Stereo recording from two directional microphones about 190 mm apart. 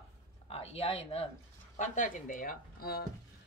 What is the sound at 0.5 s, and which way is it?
Speech, 30° left (ahead or behind).